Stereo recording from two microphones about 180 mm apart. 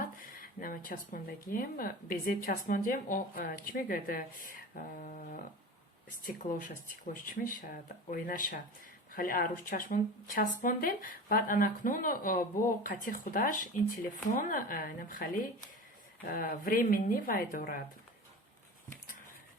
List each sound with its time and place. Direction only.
0.0 s speech: 50° left (ahead or behind)